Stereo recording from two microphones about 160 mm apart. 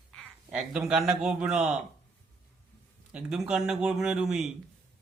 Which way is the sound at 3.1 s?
5° right (ahead or behind).